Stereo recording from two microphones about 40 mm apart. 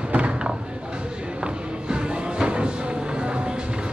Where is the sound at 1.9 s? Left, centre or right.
Right.